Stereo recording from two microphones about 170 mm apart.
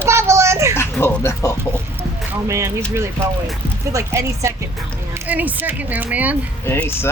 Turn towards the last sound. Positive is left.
turn(degrees=10)  # may be behind; listen again after turning